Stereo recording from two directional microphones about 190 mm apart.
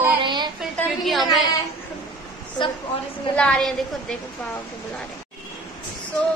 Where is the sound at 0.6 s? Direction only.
Centre (ahead or behind).